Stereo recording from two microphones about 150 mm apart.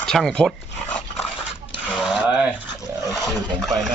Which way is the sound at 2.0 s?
5° right (ahead or behind).